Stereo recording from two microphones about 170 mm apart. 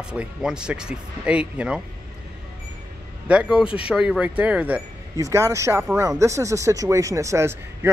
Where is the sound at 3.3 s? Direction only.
5° right (ahead or behind).